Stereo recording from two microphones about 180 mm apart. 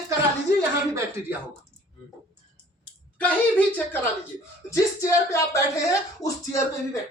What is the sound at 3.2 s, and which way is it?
Speech, 10° left (ahead or behind).